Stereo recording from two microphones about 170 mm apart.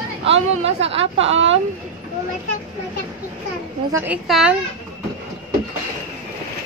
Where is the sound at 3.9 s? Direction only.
10° right (ahead or behind).